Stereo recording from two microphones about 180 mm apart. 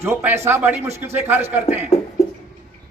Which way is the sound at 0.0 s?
15° right (ahead or behind).